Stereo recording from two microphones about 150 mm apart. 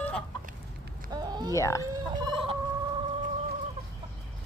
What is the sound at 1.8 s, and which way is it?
Turkey, 25° right (ahead or behind).